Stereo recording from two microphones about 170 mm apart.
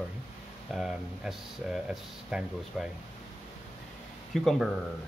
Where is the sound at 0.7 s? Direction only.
5° right (ahead or behind).